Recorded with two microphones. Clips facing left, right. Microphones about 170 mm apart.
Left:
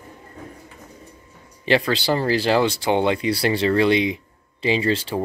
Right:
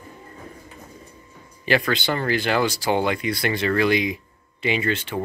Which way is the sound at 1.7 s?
30° left (ahead or behind).